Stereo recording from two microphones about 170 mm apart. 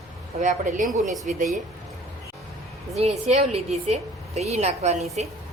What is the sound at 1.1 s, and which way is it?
Speech, centre (ahead or behind).